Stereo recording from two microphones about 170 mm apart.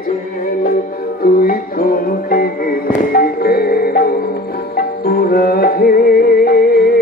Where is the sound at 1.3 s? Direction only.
55° left (ahead or behind).